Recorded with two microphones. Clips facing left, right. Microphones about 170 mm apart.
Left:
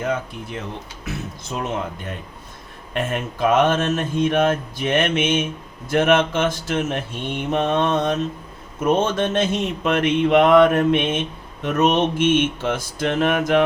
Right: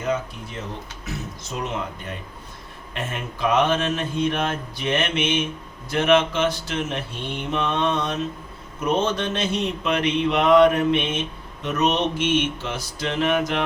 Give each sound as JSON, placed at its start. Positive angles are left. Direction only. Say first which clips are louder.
{"t": 2.9, "sound": "mantra", "louder": "left 6 dB", "side_deg": 50}